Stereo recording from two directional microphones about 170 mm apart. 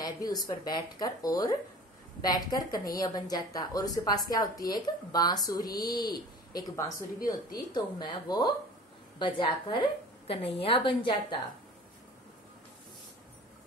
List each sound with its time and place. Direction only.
0.0 s a woman's voice: 25° left (ahead or behind)